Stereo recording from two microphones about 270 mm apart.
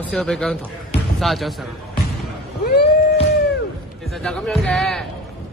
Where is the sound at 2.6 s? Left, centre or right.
Left.